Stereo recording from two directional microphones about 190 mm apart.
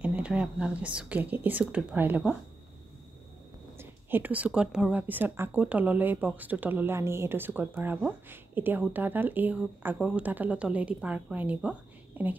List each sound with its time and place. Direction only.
0.0 s a woman's voice: 5° right (ahead or behind)
3.7 s a woman's voice: 10° right (ahead or behind)